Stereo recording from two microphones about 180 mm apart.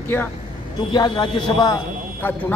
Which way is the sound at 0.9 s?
25° left (ahead or behind).